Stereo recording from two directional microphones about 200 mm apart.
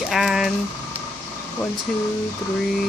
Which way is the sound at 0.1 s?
Centre (ahead or behind).